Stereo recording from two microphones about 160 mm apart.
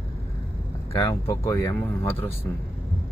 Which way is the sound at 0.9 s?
15° left (ahead or behind).